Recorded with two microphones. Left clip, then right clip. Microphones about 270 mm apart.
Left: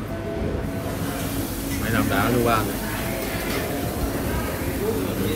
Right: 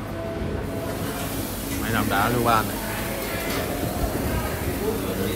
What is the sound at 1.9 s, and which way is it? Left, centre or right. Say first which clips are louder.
Speech: even; centre.